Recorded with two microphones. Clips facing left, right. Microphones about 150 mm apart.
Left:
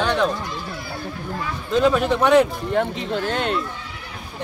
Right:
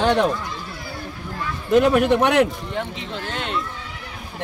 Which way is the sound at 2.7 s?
45° left (ahead or behind).